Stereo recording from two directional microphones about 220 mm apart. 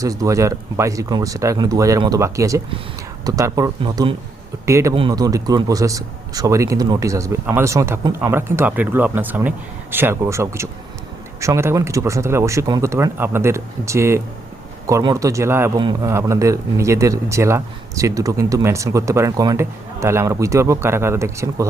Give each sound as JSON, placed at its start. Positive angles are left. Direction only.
{"t": 0.0, "sound": "a man's voice", "side_deg": -15}